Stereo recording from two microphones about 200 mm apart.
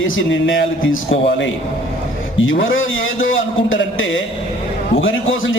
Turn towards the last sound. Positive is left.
turn(degrees=75)  # may be behind; listen again after turning